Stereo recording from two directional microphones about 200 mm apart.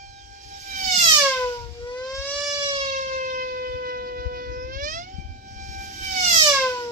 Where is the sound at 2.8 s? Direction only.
40° right (ahead or behind).